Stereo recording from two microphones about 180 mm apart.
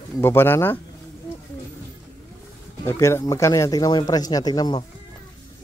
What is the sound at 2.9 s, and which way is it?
Speech, 15° left (ahead or behind).